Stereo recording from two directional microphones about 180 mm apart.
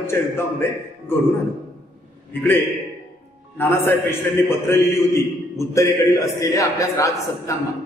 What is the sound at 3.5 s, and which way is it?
A man's voice, 15° left (ahead or behind).